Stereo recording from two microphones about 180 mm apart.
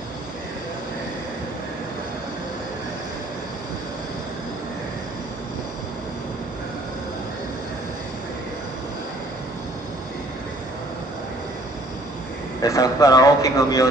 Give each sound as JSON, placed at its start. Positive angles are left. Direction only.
{"t": 12.6, "sound": "a man's voice", "side_deg": 20}